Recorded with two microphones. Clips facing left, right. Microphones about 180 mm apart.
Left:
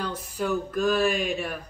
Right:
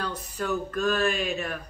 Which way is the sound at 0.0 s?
10° left (ahead or behind).